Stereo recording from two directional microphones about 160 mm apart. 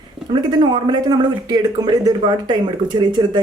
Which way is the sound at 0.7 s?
25° right (ahead or behind).